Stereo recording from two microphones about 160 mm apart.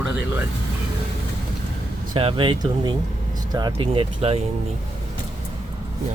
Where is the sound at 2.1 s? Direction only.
30° right (ahead or behind).